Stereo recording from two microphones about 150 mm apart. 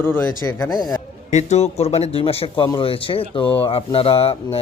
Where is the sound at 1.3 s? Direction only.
50° left (ahead or behind).